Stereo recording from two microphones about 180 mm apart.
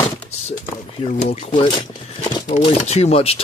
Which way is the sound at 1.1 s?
45° left (ahead or behind).